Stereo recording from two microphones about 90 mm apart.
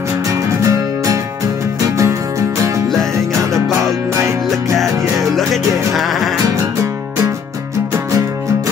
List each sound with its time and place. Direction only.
0.3 s music: 35° right (ahead or behind)
5.3 s music: centre (ahead or behind)
6.4 s music: 40° right (ahead or behind)